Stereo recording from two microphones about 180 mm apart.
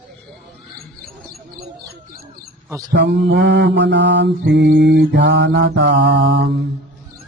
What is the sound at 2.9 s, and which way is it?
Mantra, 70° right (ahead or behind).